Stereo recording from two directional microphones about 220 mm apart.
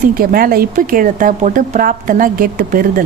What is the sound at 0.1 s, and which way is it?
Speech, 40° right (ahead or behind).